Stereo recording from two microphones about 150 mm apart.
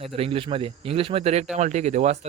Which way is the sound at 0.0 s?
40° right (ahead or behind).